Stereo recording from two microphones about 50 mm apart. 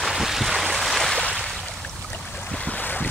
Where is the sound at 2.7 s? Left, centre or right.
Left.